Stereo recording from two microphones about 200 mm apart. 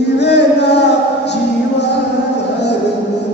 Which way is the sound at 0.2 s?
60° left (ahead or behind).